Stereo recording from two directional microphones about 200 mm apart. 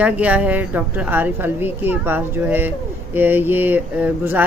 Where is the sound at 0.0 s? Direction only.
5° right (ahead or behind).